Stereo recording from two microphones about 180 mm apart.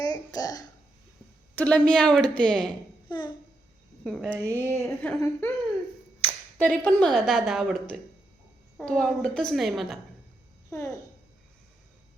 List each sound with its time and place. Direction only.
0.0 s a child's voice: 20° left (ahead or behind)
1.5 s a woman's voice: 5° left (ahead or behind)
4.0 s a woman's voice: centre (ahead or behind)
4.4 s a sound: 10° left (ahead or behind)
6.2 s a woman's voice: 10° left (ahead or behind)
10.7 s a child's voice: 15° left (ahead or behind)